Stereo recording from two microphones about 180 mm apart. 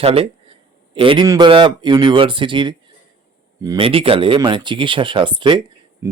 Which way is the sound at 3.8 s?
30° right (ahead or behind).